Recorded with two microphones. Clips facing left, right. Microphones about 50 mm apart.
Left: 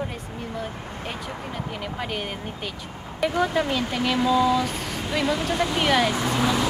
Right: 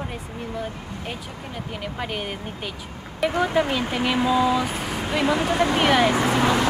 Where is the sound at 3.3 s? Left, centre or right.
Centre.